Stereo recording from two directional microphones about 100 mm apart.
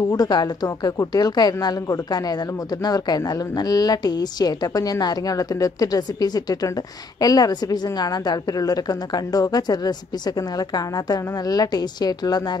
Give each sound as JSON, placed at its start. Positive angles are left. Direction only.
{"t": 0.1, "sound": "a woman's voice", "side_deg": 40}